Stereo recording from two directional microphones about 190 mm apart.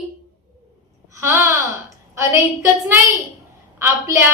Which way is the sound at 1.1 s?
10° right (ahead or behind).